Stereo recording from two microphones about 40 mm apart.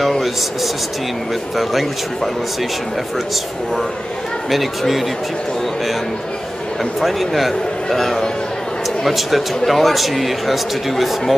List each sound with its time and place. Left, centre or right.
0.0 s a sound: centre
1.6 s speech: centre
4.5 s speech: centre
6.8 s speech: centre